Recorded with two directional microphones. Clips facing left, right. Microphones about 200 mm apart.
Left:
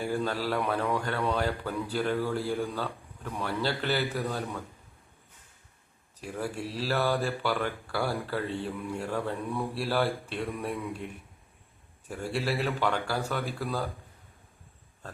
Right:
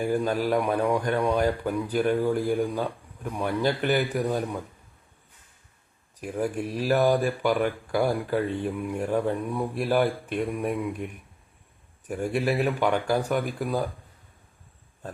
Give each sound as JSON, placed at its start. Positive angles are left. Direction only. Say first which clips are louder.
{"t": 0.0, "sound": "speech", "louder": "right 5 dB", "side_deg": -15}
{"t": 6.1, "sound": "speech", "louder": "right 6 dB", "side_deg": -15}